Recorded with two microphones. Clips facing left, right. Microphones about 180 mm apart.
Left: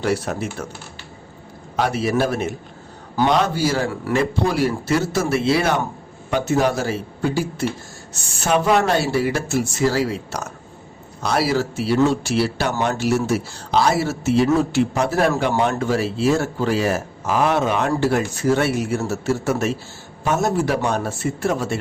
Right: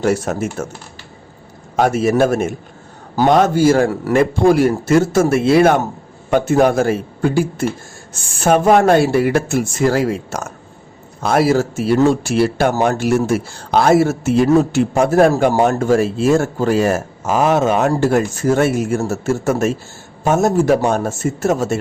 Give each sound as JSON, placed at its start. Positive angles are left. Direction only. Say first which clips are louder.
{"t": 0.0, "sound": "speech", "louder": "right 5 dB", "side_deg": -45}
{"t": 1.7, "sound": "speech", "louder": "right 5 dB", "side_deg": -45}